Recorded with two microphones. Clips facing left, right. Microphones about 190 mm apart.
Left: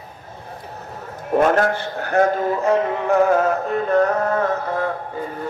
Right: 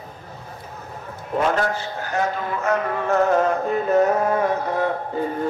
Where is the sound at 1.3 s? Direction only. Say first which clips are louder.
Left 5 dB; 50° left (ahead or behind); by 2.8 s 35° left (ahead or behind).